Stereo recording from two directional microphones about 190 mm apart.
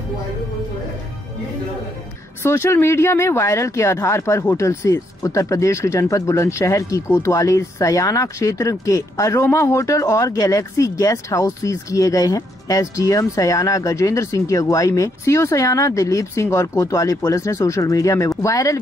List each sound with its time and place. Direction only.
2.4 s speech: 15° left (ahead or behind)